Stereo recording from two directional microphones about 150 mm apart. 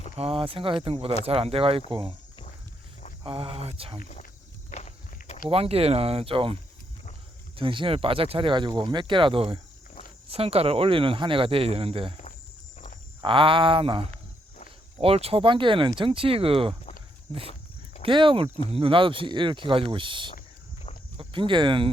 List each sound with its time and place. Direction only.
0.2 s speech: 40° right (ahead or behind)
3.2 s speech: 35° right (ahead or behind)
4.0 s speech: 60° left (ahead or behind)
4.7 s walk: 50° left (ahead or behind)
5.5 s speech: 40° right (ahead or behind)
13.2 s speech: 35° right (ahead or behind)
18.0 s speech: 35° right (ahead or behind)